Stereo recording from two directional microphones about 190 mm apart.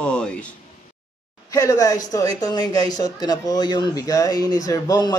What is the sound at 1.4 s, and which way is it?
Speech, 15° left (ahead or behind).